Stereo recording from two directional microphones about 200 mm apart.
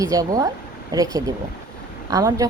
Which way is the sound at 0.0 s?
15° right (ahead or behind).